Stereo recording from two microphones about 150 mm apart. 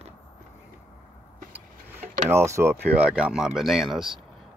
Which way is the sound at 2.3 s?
20° right (ahead or behind).